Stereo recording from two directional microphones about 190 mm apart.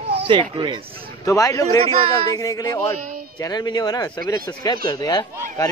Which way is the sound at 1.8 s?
30° right (ahead or behind).